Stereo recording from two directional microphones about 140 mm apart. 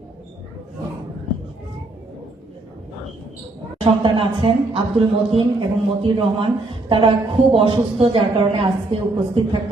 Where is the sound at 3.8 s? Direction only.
40° right (ahead or behind).